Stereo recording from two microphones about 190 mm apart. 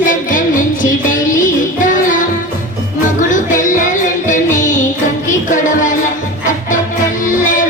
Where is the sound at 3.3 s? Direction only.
40° left (ahead or behind).